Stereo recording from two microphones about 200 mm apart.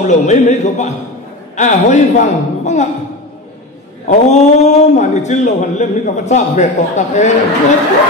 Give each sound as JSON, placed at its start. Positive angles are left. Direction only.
{"t": 0.0, "sound": "a man's voice", "side_deg": 35}
{"t": 4.1, "sound": "a man's voice", "side_deg": 35}